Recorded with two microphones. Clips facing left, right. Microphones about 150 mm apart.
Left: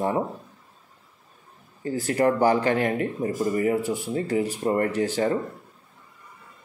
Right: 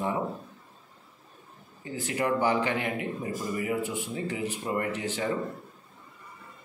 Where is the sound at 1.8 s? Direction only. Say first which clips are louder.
Left 7 dB; 40° left (ahead or behind).